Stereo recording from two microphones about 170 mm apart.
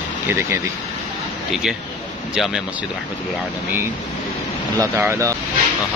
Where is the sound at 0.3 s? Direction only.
15° right (ahead or behind).